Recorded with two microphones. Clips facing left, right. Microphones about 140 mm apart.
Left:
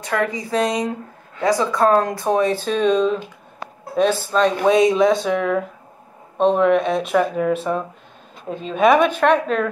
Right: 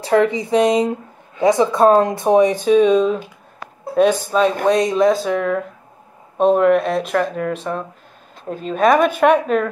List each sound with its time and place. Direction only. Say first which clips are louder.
0.0 s speech: right 7 dB; 25° right (ahead or behind); by 3.1 s 10° right (ahead or behind)
4.1 s a woman's voice: right 2 dB; 10° right (ahead or behind)
4.6 s speech: left 2 dB; centre (ahead or behind)
9.1 s a woman's voice: right 3 dB; 10° right (ahead or behind)